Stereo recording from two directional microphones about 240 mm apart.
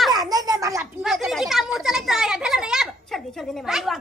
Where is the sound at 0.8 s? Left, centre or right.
Centre.